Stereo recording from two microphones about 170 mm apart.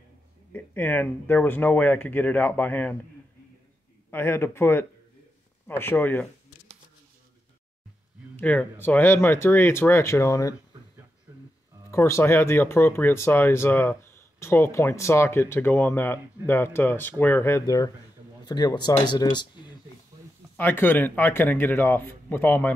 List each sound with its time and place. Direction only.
0.5 s speech: 10° left (ahead or behind)
4.1 s speech: 15° left (ahead or behind)
8.4 s speech: 10° left (ahead or behind)
11.9 s speech: 15° left (ahead or behind)
20.5 s speech: 10° left (ahead or behind)